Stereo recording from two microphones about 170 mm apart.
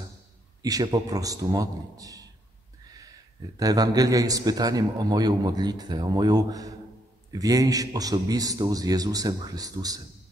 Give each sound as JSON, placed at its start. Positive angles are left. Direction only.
{"t": 0.6, "sound": "a man's voice", "side_deg": -20}
{"t": 3.5, "sound": "a man's voice", "side_deg": -20}